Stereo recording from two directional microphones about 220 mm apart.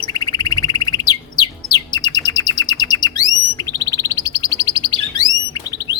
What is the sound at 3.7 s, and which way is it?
Chirp, 15° left (ahead or behind).